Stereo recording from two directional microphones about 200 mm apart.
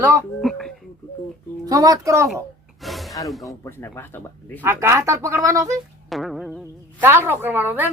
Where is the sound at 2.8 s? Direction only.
Centre (ahead or behind).